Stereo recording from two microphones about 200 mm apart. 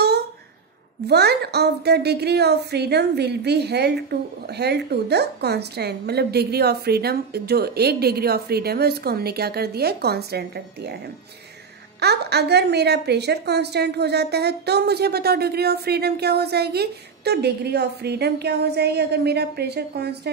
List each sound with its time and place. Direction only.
1.0 s a woman's voice: 55° right (ahead or behind)
12.0 s a woman's voice: 55° right (ahead or behind)